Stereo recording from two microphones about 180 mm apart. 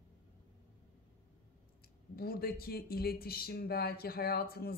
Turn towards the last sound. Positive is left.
turn(degrees=55)  # may be behind; listen again after turning